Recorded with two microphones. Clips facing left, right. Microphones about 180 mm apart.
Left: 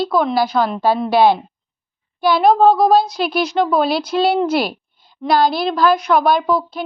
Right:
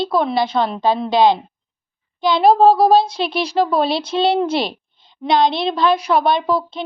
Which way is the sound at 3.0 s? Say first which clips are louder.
Left 1 dB; 25° right (ahead or behind).